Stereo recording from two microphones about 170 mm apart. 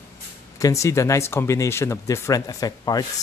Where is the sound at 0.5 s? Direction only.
20° left (ahead or behind).